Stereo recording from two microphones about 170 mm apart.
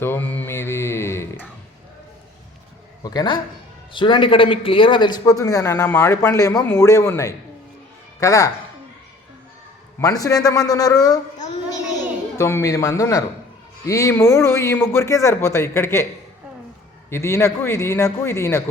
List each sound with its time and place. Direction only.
0.0 s mantra: 10° left (ahead or behind)
3.0 s a man's voice: 25° left (ahead or behind)
10.0 s a man's voice: 20° left (ahead or behind)
12.4 s speech: 15° left (ahead or behind)
17.1 s speech: 15° left (ahead or behind)